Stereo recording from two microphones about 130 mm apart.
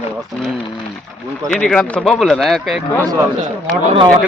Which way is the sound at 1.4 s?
5° left (ahead or behind).